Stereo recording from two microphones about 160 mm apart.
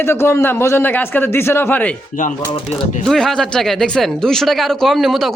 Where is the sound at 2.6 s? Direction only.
35° left (ahead or behind).